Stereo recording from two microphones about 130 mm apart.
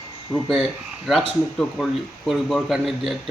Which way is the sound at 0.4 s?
Centre (ahead or behind).